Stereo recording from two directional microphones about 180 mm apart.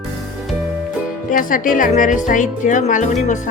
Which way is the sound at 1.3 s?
50° left (ahead or behind).